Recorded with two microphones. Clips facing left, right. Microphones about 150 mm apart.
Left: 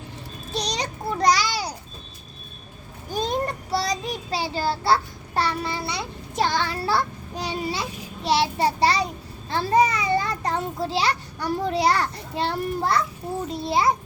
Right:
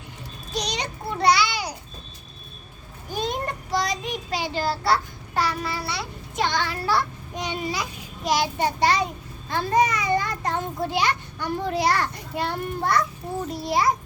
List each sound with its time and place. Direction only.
0.5 s a sound: 35° left (ahead or behind)
3.2 s child singing: 35° left (ahead or behind)
6.3 s a child's voice: 35° left (ahead or behind)